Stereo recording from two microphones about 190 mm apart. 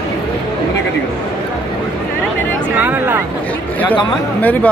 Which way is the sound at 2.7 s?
10° right (ahead or behind).